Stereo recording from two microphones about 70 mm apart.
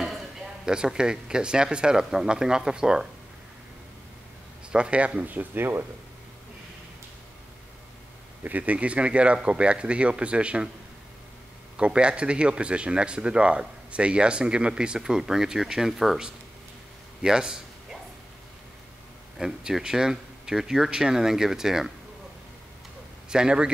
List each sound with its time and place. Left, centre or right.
0.7 s speech: centre
4.7 s speech: centre; by 5.9 s right
8.5 s speech: right
11.7 s speech: centre
19.3 s speech: centre
23.3 s speech: centre